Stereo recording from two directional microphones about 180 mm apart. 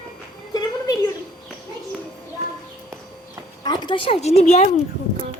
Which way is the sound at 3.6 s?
25° left (ahead or behind).